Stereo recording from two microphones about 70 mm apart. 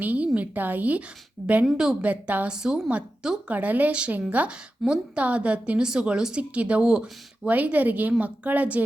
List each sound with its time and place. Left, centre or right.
0.0 s a woman's voice: right
1.7 s a woman's voice: centre
2.0 s a woman's voice: right
2.5 s a woman's voice: centre
2.9 s a woman's voice: right
4.8 s a woman's voice: centre
5.1 s a woman's voice: centre